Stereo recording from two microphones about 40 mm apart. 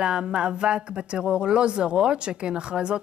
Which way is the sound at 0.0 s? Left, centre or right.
Right.